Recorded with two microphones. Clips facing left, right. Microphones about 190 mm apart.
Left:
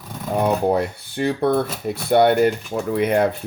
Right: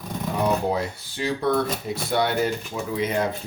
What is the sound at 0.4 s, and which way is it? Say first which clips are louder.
Speech: left 4 dB; 60° left (ahead or behind).